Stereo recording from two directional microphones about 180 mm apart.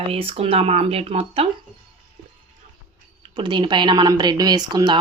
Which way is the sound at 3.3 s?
25° right (ahead or behind).